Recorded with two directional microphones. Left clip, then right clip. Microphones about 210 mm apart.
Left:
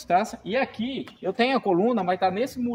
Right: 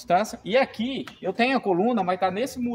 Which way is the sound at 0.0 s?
25° right (ahead or behind).